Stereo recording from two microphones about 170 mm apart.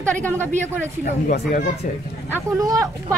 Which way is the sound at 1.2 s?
60° left (ahead or behind).